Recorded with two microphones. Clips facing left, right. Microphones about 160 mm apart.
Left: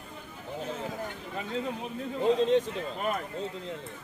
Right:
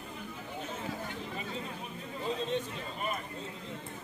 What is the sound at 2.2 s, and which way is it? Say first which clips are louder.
Speech: left 10 dB; 90° left.